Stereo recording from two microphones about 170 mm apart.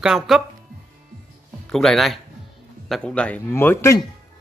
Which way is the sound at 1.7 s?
Centre (ahead or behind).